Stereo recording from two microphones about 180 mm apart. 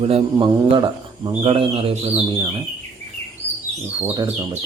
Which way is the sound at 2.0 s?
15° right (ahead or behind).